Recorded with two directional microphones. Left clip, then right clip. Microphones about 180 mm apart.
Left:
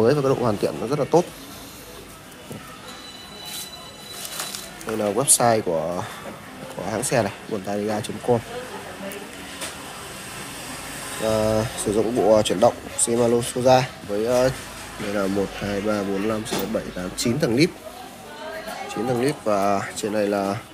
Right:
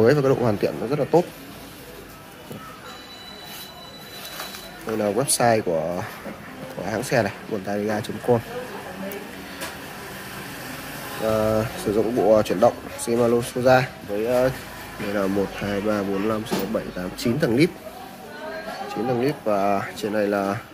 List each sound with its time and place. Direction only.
0.0 s speech: 30° right (ahead or behind)
0.6 s speech: 10° right (ahead or behind)
4.8 s speech: 15° right (ahead or behind)
11.2 s speech: centre (ahead or behind)
14.2 s speech: 10° left (ahead or behind)
15.1 s speech: 10° right (ahead or behind)
18.9 s speech: centre (ahead or behind)